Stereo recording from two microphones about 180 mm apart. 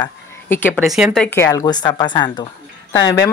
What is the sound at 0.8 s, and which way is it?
A woman's voice, centre (ahead or behind).